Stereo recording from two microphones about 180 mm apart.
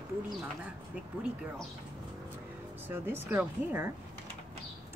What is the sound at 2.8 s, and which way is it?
A woman's voice, 10° right (ahead or behind).